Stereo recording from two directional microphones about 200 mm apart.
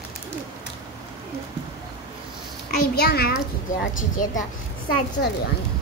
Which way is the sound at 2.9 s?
50° left (ahead or behind).